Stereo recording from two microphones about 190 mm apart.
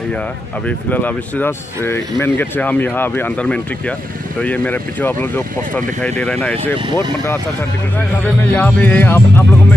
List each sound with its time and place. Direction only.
0.7 s speech: 10° left (ahead or behind)
8.3 s speech: 5° left (ahead or behind)